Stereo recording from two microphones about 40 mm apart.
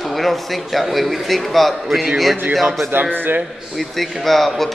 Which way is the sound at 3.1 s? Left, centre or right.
Right.